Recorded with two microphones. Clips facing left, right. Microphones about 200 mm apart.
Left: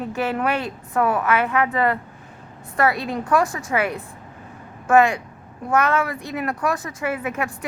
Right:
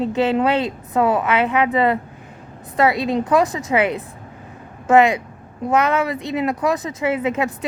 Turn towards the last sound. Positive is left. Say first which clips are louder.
# right 5 dB
turn(degrees=-20)  # may be behind; listen again after turning